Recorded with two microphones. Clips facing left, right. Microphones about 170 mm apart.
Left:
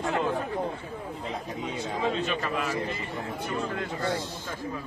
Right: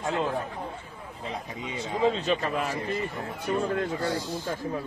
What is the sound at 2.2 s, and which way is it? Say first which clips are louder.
Speech: right 2 dB; 45° right (ahead or behind).